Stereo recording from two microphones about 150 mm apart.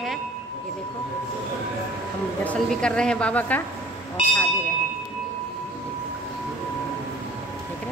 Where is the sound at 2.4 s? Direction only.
5° left (ahead or behind).